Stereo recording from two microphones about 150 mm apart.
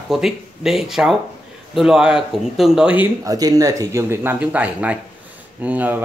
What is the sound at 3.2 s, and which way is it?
Speech, 25° right (ahead or behind).